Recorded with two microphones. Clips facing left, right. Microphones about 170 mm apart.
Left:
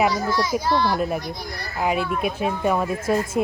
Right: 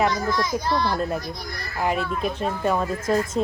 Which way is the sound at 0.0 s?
5° left (ahead or behind).